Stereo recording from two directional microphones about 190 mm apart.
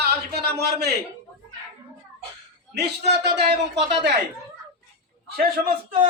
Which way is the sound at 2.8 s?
60° right (ahead or behind).